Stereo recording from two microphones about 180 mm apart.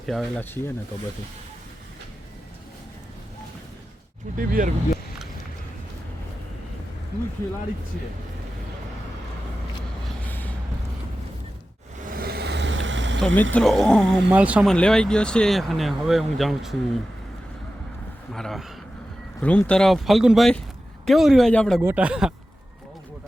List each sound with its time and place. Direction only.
0.0 s speech: centre (ahead or behind)
4.4 s speech: 50° right (ahead or behind)
10.1 s vehicle: 10° left (ahead or behind)
12.1 s vehicle: 60° right (ahead or behind); by 13.2 s 90° right
13.2 s speech: 10° left (ahead or behind)
18.3 s a man's voice: centre (ahead or behind)
21.8 s speech: 10° right (ahead or behind)